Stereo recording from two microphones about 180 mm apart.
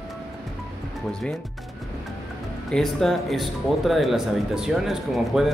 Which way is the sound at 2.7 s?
5° left (ahead or behind).